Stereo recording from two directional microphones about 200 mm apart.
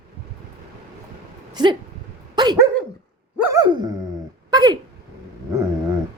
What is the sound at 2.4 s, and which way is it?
Dog, 20° right (ahead or behind).